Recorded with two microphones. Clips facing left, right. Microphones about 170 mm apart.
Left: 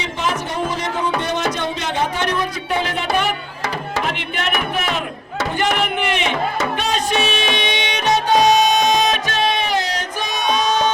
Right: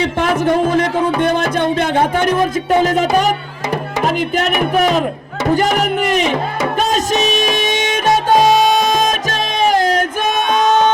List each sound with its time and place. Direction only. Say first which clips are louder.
0.0 s music: right 8 dB; 55° right (ahead or behind); by 5.0 s 40° right (ahead or behind)
5.5 s speech: right 3 dB; 40° right (ahead or behind)
6.7 s music: right 4 dB; 40° right (ahead or behind)